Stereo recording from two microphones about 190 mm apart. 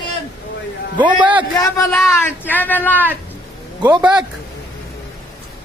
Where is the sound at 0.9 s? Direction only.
25° right (ahead or behind).